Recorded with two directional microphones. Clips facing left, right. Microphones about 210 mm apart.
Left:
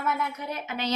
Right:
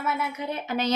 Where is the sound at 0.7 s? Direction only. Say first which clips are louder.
Right 4 dB; 45° right (ahead or behind).